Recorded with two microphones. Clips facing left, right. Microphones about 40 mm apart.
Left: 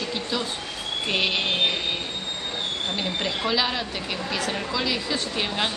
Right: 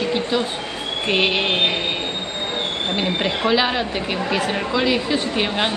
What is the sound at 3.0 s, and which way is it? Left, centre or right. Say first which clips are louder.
Speech: right 7 dB; right.